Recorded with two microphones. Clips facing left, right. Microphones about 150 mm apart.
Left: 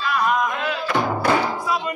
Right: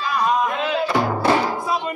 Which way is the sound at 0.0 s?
25° right (ahead or behind).